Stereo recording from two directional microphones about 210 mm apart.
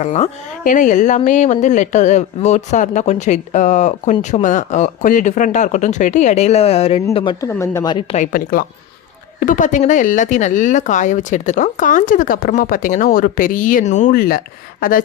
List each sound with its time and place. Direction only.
0.0 s speech: 35° left (ahead or behind)
7.4 s speech: 15° left (ahead or behind)
8.1 s speech: 40° left (ahead or behind)